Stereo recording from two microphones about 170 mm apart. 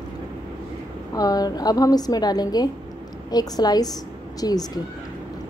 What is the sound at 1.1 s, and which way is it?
A woman's voice, 20° left (ahead or behind).